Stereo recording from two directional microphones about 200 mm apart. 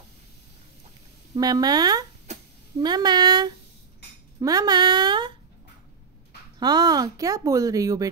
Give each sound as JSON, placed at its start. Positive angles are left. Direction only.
{"t": 1.3, "sound": "speech", "side_deg": -20}
{"t": 6.6, "sound": "speech", "side_deg": -20}